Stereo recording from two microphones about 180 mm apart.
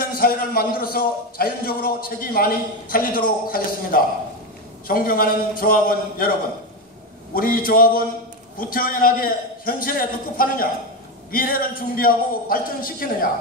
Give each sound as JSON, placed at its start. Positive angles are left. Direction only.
{"t": 0.0, "sound": "a man's voice", "side_deg": 55}
{"t": 7.3, "sound": "a man's voice", "side_deg": 55}